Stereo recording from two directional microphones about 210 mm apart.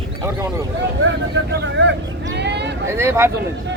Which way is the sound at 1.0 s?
55° right (ahead or behind).